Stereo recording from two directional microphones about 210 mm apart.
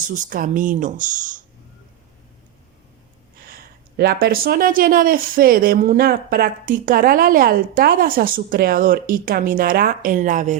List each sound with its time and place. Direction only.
0.1 s speech: 40° right (ahead or behind)
3.4 s speech: 45° right (ahead or behind)